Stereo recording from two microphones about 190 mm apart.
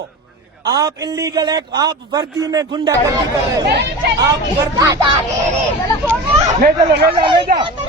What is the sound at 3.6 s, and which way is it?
Speech, 60° right (ahead or behind).